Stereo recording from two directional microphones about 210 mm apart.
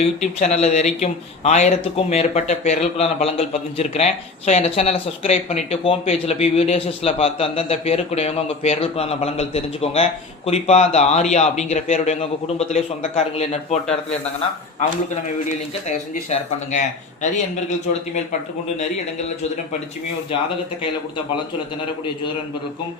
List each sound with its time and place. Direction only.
0.0 s speech: 35° left (ahead or behind)
14.8 s speech: 35° left (ahead or behind)